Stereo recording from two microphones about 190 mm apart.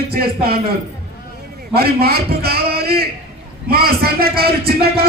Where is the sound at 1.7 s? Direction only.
55° right (ahead or behind).